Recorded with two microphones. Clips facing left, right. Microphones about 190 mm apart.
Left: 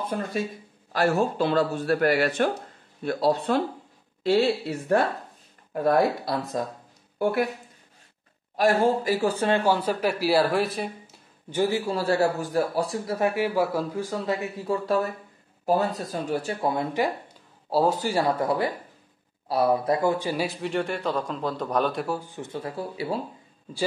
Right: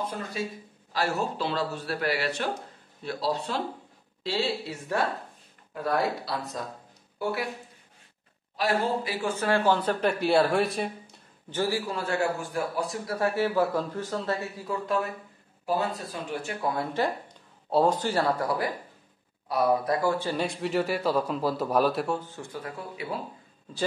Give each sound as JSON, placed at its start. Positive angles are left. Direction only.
{"t": 0.0, "sound": "a man's voice", "side_deg": 55}
{"t": 8.5, "sound": "a man's voice", "side_deg": 50}
{"t": 9.5, "sound": "speech", "side_deg": 10}
{"t": 11.5, "sound": "speech", "side_deg": 20}
{"t": 11.9, "sound": "speech", "side_deg": 35}
{"t": 14.6, "sound": "speech", "side_deg": 35}
{"t": 16.6, "sound": "a man's voice", "side_deg": 20}
{"t": 17.6, "sound": "a man's voice", "side_deg": 5}
{"t": 19.4, "sound": "speech", "side_deg": 30}
{"t": 22.2, "sound": "speech", "side_deg": 20}